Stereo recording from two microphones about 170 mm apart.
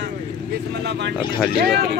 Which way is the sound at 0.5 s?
85° right.